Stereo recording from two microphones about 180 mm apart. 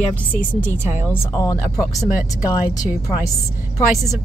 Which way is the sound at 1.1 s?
15° left (ahead or behind).